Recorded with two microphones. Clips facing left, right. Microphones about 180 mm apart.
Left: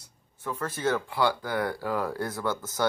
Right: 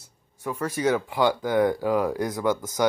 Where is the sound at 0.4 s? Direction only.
10° right (ahead or behind).